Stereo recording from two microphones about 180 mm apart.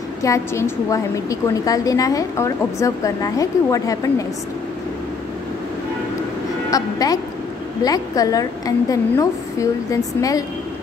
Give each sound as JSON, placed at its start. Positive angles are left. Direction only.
{"t": 0.2, "sound": "a woman's voice", "side_deg": 15}
{"t": 6.7, "sound": "a woman's voice", "side_deg": 20}